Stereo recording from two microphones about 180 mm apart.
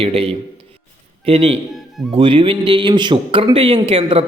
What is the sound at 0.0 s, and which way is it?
A man's voice, 30° right (ahead or behind).